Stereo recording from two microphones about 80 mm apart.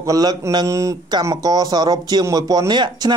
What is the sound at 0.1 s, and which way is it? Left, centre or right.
Speech, right.